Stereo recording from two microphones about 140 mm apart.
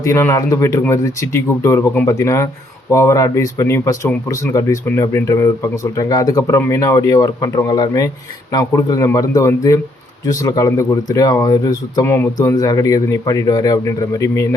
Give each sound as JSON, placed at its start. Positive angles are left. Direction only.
{"t": 0.0, "sound": "speech", "side_deg": 20}